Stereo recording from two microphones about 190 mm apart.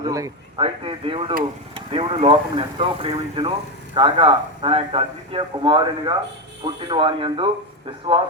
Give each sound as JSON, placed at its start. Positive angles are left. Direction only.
{"t": 0.0, "sound": "a man's voice", "side_deg": -20}